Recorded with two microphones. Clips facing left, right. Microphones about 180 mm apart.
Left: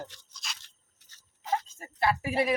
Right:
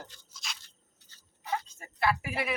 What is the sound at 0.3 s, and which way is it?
Crunch, centre (ahead or behind).